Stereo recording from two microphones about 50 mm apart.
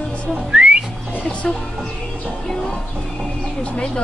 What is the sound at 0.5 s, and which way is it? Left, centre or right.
Whistling, right.